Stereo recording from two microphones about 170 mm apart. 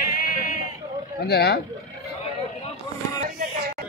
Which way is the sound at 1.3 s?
70° left (ahead or behind).